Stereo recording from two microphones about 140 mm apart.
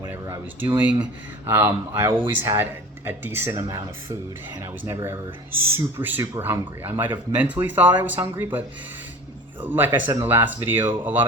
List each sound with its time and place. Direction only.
0.0 s speech: 15° right (ahead or behind)
3.5 s speech: 25° right (ahead or behind)
9.6 s speech: 15° right (ahead or behind)